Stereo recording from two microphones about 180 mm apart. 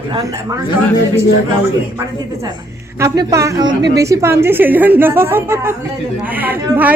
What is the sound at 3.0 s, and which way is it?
A woman's voice, 15° right (ahead or behind).